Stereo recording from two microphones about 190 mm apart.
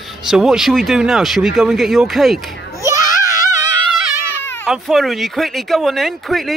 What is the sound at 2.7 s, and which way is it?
Babbling, 15° right (ahead or behind).